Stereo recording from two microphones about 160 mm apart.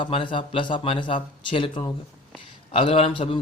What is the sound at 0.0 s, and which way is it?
Speech, 30° left (ahead or behind).